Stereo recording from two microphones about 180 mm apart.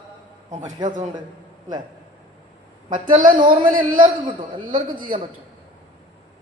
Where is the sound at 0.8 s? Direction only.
45° right (ahead or behind).